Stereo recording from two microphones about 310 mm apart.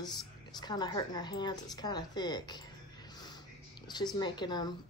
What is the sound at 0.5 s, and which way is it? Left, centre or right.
Speech, centre.